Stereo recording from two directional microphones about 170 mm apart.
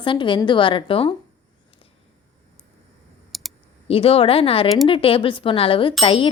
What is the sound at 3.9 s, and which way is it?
A woman's voice, 35° left (ahead or behind).